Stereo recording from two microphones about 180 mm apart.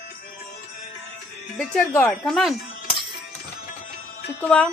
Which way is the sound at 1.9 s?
10° left (ahead or behind).